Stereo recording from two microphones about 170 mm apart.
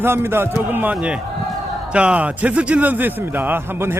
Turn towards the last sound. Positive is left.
turn(degrees=-15)  # may be behind; listen again after turning